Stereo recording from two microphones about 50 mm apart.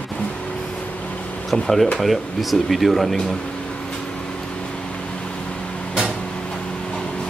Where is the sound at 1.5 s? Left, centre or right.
Centre.